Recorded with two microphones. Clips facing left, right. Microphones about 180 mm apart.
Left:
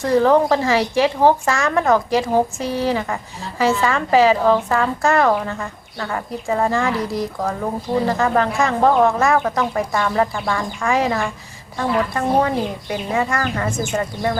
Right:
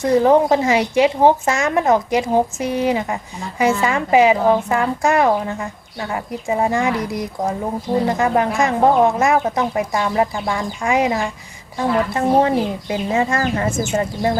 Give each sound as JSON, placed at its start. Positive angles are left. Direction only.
{"t": 0.0, "sound": "a woman's voice", "side_deg": -20}